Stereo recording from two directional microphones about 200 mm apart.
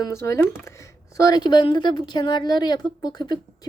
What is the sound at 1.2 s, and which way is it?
A woman's voice, 20° left (ahead or behind).